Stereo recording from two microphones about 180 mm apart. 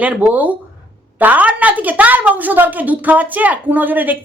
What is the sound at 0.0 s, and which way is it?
A woman's voice, 5° right (ahead or behind).